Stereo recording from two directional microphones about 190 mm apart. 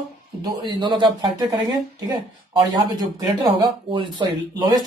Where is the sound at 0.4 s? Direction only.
20° right (ahead or behind).